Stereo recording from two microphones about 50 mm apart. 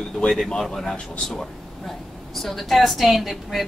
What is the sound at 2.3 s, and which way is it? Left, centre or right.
Speech, centre.